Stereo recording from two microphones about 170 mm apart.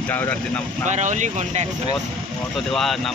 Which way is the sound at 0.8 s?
45° right (ahead or behind).